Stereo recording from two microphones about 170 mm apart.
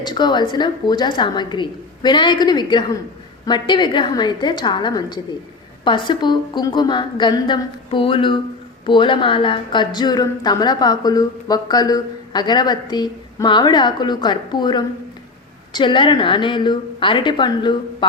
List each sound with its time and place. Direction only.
0.0 s a woman's voice: 25° left (ahead or behind)